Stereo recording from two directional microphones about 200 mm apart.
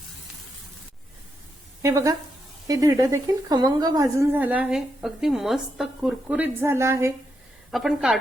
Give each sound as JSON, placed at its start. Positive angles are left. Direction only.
{"t": 1.8, "sound": "a woman's voice", "side_deg": -15}
{"t": 7.7, "sound": "a woman's voice", "side_deg": 0}